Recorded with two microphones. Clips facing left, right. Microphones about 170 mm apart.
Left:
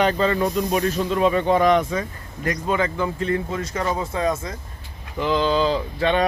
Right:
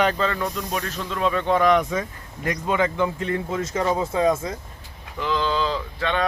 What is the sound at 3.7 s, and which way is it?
Speech, 10° right (ahead or behind).